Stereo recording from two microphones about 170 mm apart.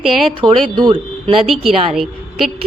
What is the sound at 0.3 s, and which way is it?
Speech, 25° right (ahead or behind).